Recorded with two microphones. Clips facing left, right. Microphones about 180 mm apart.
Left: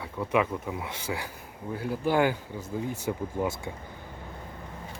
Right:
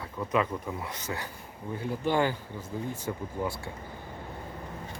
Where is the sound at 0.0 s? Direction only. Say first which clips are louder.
Left 2 dB; 10° left (ahead or behind).